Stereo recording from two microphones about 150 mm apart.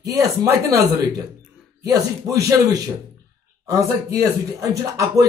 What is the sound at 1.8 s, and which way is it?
Speech, 20° right (ahead or behind).